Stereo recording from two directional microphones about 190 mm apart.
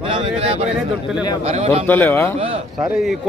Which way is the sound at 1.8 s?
10° left (ahead or behind).